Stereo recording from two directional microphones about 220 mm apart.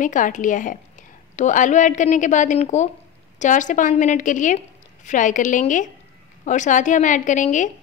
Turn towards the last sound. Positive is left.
turn(degrees=35)  # may be behind; listen again after turning